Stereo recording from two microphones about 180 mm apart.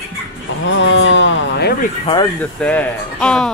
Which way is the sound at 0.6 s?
90° left.